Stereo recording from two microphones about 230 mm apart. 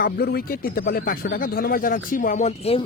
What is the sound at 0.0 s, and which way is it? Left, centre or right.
Speech, left.